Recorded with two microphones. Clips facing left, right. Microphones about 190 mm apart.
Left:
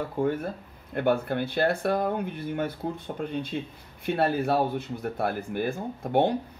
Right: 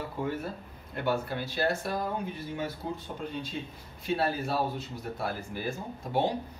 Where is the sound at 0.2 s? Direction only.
50° left (ahead or behind).